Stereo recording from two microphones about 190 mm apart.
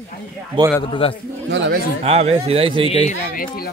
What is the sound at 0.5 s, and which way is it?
Speech, 25° right (ahead or behind).